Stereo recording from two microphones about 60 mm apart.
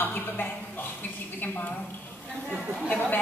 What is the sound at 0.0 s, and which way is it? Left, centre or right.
Speech, left.